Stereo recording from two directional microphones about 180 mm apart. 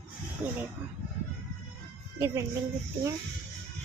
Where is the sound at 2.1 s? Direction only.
15° right (ahead or behind).